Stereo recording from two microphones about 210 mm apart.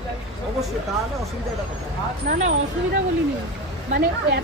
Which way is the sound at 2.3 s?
35° right (ahead or behind).